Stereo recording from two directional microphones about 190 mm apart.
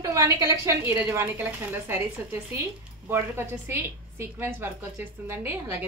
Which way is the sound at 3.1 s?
10° right (ahead or behind).